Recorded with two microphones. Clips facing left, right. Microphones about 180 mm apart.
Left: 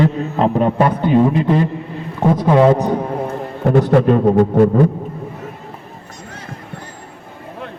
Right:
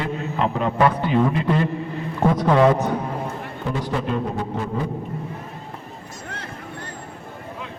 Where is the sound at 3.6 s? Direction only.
60° left (ahead or behind).